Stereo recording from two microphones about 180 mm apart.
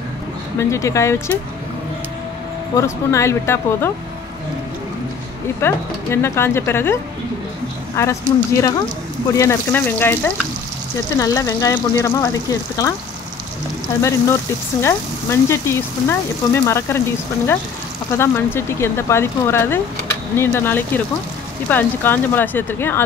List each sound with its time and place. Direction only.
0.6 s speech: 15° left (ahead or behind)
2.7 s speech: 15° left (ahead or behind)
5.6 s speech: 15° left (ahead or behind)
14.8 s speech: 15° left (ahead or behind)
18.1 s speech: 15° left (ahead or behind)